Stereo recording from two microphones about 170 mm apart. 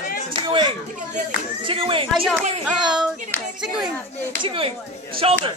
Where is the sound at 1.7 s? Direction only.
30° right (ahead or behind).